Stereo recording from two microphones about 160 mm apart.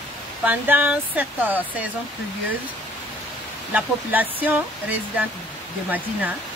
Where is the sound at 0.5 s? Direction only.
10° right (ahead or behind).